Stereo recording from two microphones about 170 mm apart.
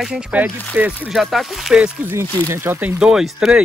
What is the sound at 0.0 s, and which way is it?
Speech, 5° right (ahead or behind).